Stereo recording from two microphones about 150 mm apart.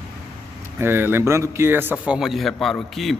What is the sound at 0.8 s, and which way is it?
Speech, 15° right (ahead or behind).